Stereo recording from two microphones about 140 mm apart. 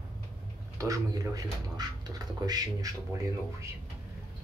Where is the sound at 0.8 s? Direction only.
25° right (ahead or behind).